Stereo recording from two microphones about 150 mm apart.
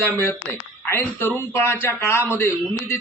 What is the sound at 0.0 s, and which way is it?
A man's voice, 10° left (ahead or behind).